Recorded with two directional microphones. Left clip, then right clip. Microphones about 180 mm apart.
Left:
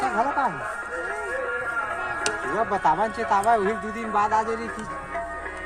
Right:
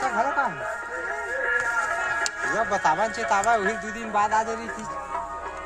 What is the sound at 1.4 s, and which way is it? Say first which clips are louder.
Music: right 7 dB; 45° left (ahead or behind).